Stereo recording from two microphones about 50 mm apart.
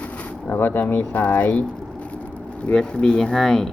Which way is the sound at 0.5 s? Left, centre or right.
Left.